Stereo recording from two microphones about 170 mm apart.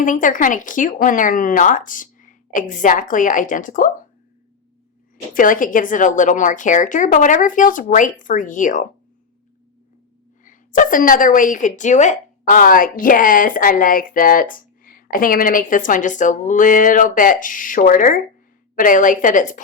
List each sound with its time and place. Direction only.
0.0 s a woman's voice: 50° left (ahead or behind)
5.3 s a woman's voice: 50° left (ahead or behind)
10.4 s a woman's voice: 50° left (ahead or behind)